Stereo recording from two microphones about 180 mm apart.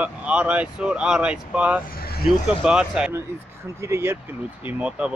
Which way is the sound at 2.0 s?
60° left (ahead or behind).